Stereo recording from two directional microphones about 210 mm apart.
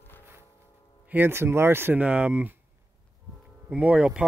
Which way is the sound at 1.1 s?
10° right (ahead or behind).